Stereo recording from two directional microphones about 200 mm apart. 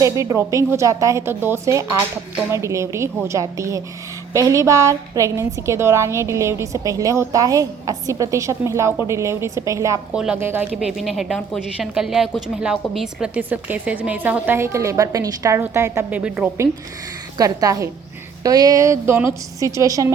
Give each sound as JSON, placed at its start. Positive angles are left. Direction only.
{"t": 0.0, "sound": "a woman's voice", "side_deg": -15}